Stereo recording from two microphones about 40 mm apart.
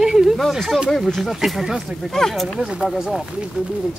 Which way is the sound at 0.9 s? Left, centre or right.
Centre.